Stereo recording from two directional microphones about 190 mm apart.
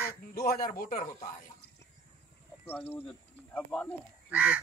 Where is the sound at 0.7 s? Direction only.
50° left (ahead or behind).